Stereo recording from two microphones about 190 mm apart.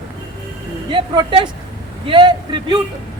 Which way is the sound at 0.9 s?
25° right (ahead or behind).